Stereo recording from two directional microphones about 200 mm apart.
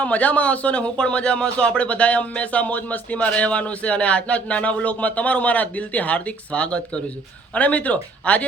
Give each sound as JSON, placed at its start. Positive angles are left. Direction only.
{"t": 0.0, "sound": "speech", "side_deg": 5}